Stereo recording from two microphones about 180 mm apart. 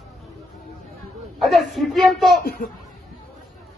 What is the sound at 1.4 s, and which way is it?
Speech, centre (ahead or behind).